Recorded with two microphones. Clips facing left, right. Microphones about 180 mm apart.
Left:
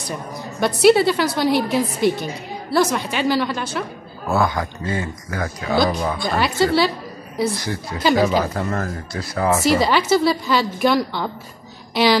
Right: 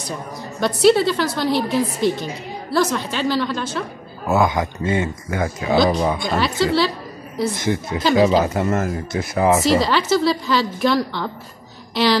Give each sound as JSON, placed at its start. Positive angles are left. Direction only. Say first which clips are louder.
{"t": 0.6, "sound": "a woman's voice", "louder": "left 1 dB", "side_deg": 10}
{"t": 4.3, "sound": "speech", "louder": "right 2 dB", "side_deg": -15}
{"t": 6.3, "sound": "a woman's voice", "louder": "left 3 dB", "side_deg": 5}
{"t": 7.5, "sound": "speech", "louder": "right 5 dB", "side_deg": -20}
{"t": 9.7, "sound": "a woman's voice", "louder": "even", "side_deg": 5}